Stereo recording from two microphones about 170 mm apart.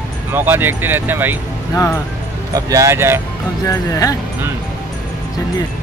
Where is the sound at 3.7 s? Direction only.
20° left (ahead or behind).